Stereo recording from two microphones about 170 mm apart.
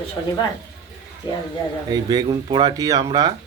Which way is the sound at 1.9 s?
25° right (ahead or behind).